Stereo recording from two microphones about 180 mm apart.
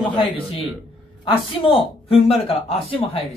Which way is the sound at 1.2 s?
30° left (ahead or behind).